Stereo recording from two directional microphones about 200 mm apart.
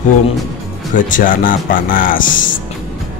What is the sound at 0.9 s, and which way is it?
Speech, 40° left (ahead or behind).